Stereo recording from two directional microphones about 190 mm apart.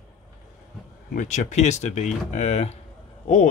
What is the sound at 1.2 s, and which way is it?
Speech, 40° left (ahead or behind).